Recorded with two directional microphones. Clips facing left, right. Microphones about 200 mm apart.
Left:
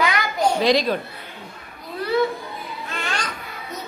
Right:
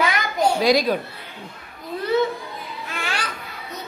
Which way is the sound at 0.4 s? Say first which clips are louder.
Right 1 dB; 10° right (ahead or behind).